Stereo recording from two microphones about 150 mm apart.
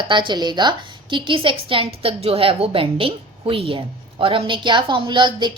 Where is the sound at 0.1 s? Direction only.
30° right (ahead or behind).